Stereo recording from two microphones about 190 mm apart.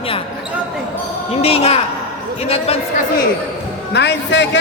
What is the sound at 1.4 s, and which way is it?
A woman's voice, 30° left (ahead or behind).